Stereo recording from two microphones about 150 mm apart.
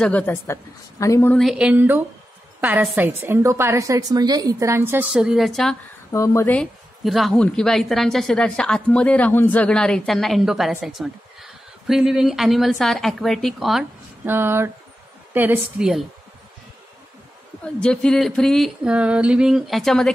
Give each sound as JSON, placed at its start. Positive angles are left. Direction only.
{"t": 0.0, "sound": "a woman's voice", "side_deg": 10}
{"t": 1.3, "sound": "a woman's voice", "side_deg": 0}
{"t": 6.1, "sound": "a woman's voice", "side_deg": 20}
{"t": 14.2, "sound": "a woman's voice", "side_deg": -15}
{"t": 17.7, "sound": "a woman's voice", "side_deg": 5}